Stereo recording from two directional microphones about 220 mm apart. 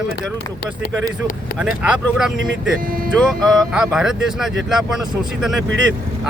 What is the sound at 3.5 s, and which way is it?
Speech, centre (ahead or behind).